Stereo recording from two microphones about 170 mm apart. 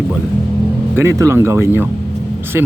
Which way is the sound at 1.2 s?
15° right (ahead or behind).